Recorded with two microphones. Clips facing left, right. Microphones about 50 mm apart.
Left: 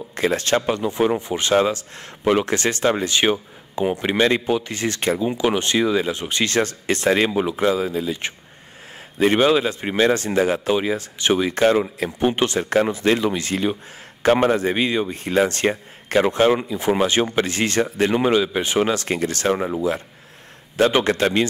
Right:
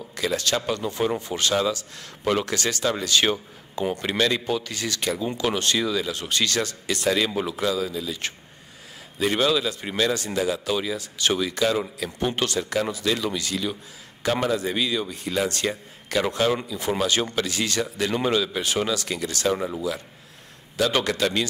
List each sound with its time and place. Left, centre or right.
0.1 s speech: left
1.5 s a man's voice: left
5.2 s speech: centre; by 7.3 s left
7.3 s speech: left
7.6 s a man's voice: left
9.2 s a man's voice: left
11.5 s a man's voice: left
12.2 s speech: left
12.5 s a man's voice: left
18.1 s a man's voice: left